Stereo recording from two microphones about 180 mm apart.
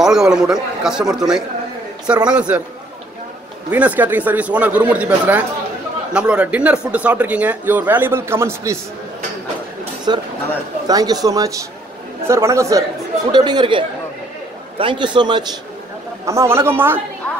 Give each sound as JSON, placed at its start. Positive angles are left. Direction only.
{"t": 0.0, "sound": "a man's voice", "side_deg": -5}
{"t": 3.7, "sound": "speech", "side_deg": -10}
{"t": 10.1, "sound": "a man's voice", "side_deg": -25}